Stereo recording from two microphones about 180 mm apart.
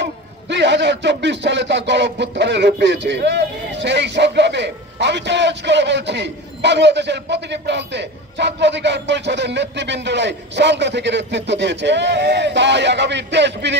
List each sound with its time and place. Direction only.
0.0 s a man's voice: 75° right (ahead or behind)